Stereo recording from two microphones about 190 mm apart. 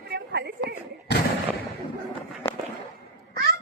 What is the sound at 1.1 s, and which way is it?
Artillery fire, 60° left (ahead or behind).